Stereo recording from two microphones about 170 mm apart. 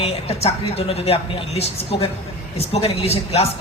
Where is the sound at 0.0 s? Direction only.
35° left (ahead or behind).